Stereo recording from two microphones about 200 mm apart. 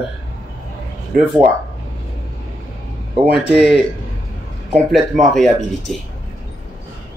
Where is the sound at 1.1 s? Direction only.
50° right (ahead or behind).